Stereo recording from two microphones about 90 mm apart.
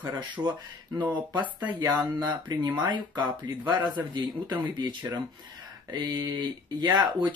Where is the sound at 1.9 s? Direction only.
50° right (ahead or behind).